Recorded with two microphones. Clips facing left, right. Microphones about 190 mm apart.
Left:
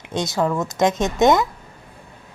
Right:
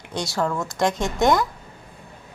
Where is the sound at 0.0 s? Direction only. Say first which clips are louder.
Left 3 dB; 20° left (ahead or behind).